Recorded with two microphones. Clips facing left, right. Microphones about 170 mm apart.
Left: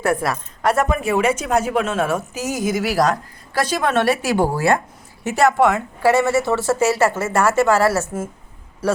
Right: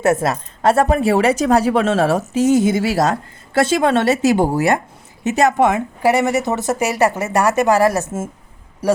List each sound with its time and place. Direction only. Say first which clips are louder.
0.0 s a woman's voice: right 4 dB; 25° right (ahead or behind)